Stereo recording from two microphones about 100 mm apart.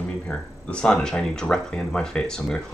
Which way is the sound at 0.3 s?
10° left (ahead or behind).